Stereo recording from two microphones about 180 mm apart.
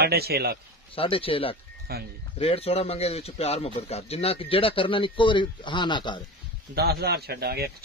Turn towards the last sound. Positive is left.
turn(degrees=-60)  # may be behind; listen again after turning